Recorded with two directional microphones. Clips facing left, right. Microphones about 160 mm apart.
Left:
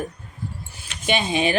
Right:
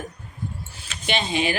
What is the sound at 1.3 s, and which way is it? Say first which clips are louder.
Speech: left 2 dB; 20° left (ahead or behind).